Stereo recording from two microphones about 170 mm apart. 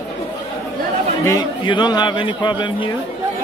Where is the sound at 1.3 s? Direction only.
25° left (ahead or behind).